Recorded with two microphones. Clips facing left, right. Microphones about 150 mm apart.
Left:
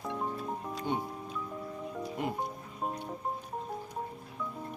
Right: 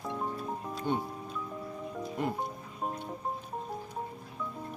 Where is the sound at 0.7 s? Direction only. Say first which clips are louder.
Right 3 dB; 15° left (ahead or behind).